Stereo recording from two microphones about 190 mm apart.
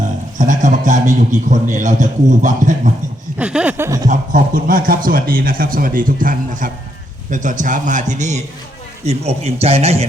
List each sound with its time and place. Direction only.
0.3 s a man's voice: 40° right (ahead or behind)
3.3 s a sound: 5° right (ahead or behind)
4.1 s a man's voice: 45° right (ahead or behind)